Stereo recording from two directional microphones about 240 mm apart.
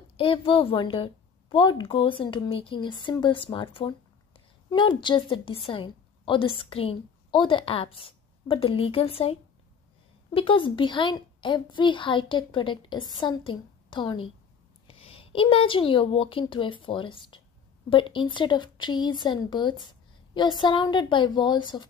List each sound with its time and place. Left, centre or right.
0.2 s a woman's voice: left